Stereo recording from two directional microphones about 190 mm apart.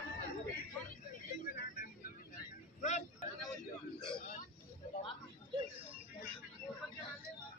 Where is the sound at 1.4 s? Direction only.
45° left (ahead or behind).